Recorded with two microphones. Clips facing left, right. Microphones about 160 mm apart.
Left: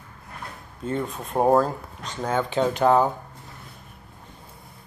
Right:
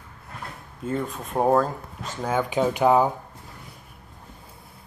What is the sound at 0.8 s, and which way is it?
Speech, centre (ahead or behind).